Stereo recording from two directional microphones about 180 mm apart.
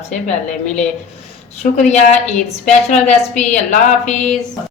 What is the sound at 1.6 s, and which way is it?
A woman's voice, 40° left (ahead or behind).